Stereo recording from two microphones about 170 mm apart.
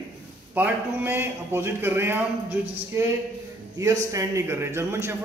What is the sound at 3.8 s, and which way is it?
A man's voice, 20° right (ahead or behind).